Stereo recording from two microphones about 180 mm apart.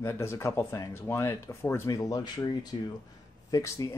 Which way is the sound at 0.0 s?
15° left (ahead or behind).